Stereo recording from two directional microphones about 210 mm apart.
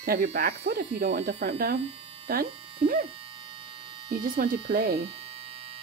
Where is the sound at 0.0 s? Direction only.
45° right (ahead or behind).